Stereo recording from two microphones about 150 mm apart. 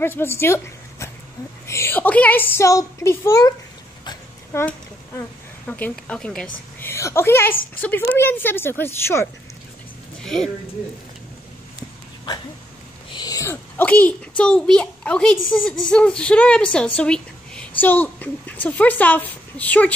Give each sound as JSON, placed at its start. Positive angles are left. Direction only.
{"t": 0.0, "sound": "a child's voice", "side_deg": 15}
{"t": 4.5, "sound": "a sound", "side_deg": 15}
{"t": 5.7, "sound": "a child's voice", "side_deg": 10}
{"t": 6.8, "sound": "a woman's voice", "side_deg": 15}
{"t": 10.2, "sound": "speech", "side_deg": 5}
{"t": 13.1, "sound": "a child's voice", "side_deg": 25}